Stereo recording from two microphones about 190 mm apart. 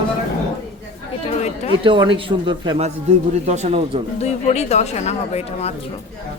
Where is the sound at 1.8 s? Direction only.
25° right (ahead or behind).